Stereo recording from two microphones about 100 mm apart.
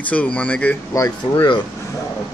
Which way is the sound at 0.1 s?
15° left (ahead or behind).